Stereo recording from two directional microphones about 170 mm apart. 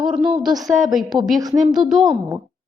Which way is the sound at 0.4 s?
Centre (ahead or behind).